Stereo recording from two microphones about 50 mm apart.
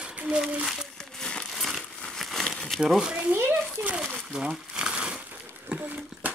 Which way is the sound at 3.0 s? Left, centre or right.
Centre.